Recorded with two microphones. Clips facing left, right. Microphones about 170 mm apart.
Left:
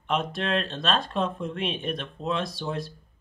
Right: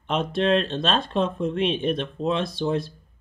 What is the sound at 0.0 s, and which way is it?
Speech, 35° right (ahead or behind).